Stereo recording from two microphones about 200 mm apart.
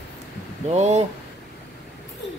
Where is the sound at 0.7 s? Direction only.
35° right (ahead or behind).